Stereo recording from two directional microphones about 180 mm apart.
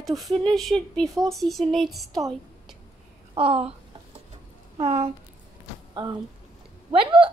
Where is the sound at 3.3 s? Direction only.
30° right (ahead or behind).